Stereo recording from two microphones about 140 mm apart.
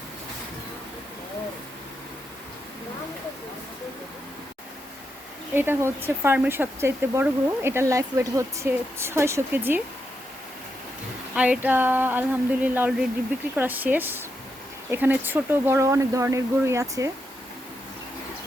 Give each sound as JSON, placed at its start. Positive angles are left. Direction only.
{"t": 5.5, "sound": "speech", "side_deg": -15}
{"t": 11.3, "sound": "speech", "side_deg": -10}